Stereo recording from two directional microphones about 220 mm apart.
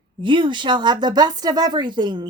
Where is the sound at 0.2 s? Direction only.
20° right (ahead or behind).